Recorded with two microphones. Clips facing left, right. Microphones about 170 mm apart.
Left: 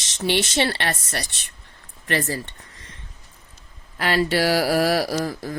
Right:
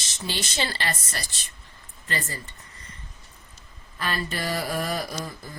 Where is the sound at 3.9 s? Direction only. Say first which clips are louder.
Left 9 dB; 85° left.